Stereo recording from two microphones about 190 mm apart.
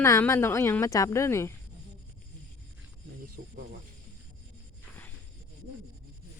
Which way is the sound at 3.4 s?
45° right (ahead or behind).